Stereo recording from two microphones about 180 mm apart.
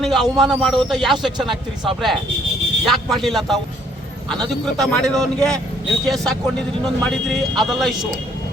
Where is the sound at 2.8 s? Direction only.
Centre (ahead or behind).